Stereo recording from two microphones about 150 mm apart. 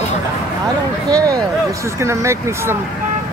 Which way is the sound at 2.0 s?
20° right (ahead or behind).